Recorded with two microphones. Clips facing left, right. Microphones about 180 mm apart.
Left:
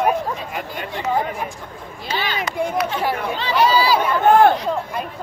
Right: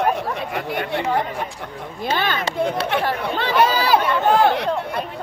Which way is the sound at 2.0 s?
55° right (ahead or behind).